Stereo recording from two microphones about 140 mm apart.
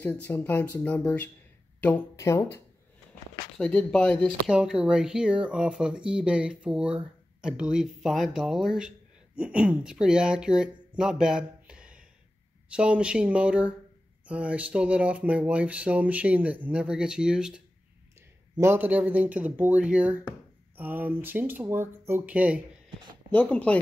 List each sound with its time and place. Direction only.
0.0 s speech: 15° left (ahead or behind)
3.5 s speech: 5° left (ahead or behind)
4.5 s speech: 5° right (ahead or behind)
11.0 s a sound: 5° right (ahead or behind)
12.6 s speech: 10° right (ahead or behind)
18.6 s speech: 15° right (ahead or behind)
23.3 s speech: 10° left (ahead or behind)